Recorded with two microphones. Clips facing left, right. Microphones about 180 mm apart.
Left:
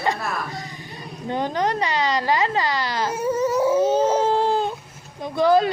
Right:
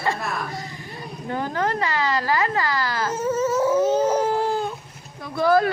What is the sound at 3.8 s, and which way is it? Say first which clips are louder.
Baby cry: left 1 dB; 30° left (ahead or behind).